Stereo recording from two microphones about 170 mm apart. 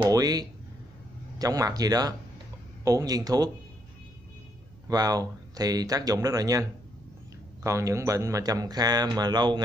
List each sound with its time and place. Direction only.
0.0 s speech: 20° right (ahead or behind)
4.8 s speech: 20° right (ahead or behind)